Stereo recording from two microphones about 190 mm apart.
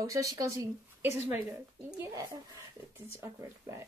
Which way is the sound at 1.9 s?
10° right (ahead or behind).